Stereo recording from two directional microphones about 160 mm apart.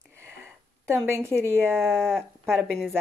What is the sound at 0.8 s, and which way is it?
Speech, 15° right (ahead or behind).